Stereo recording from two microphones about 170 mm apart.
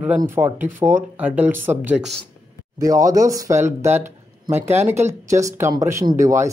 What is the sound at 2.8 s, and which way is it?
Speech, 20° right (ahead or behind).